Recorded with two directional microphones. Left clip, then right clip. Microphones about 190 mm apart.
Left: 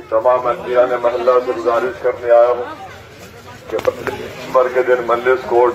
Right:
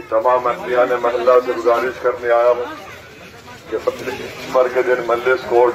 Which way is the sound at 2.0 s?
35° right (ahead or behind).